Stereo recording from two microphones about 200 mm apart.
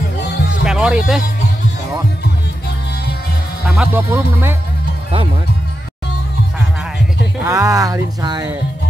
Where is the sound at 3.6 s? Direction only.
5° right (ahead or behind).